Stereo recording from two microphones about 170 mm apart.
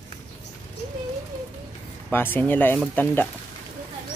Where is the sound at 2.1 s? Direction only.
10° left (ahead or behind).